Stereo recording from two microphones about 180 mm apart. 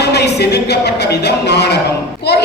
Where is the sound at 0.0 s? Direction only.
65° left (ahead or behind).